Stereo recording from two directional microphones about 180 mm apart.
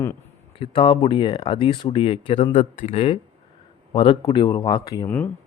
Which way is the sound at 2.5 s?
45° left (ahead or behind).